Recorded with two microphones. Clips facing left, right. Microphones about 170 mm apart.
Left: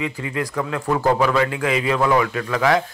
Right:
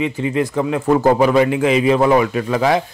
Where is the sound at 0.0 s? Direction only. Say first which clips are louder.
Right 7 dB; 20° right (ahead or behind).